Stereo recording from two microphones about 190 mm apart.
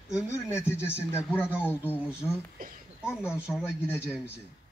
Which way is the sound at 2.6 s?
50° right (ahead or behind).